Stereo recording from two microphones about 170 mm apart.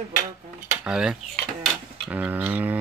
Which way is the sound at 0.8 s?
5° right (ahead or behind).